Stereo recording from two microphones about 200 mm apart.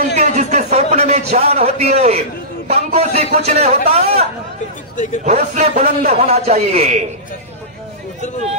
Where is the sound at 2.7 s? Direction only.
35° right (ahead or behind).